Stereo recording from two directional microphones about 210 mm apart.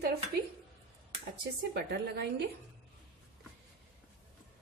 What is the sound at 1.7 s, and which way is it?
Speech, 50° right (ahead or behind).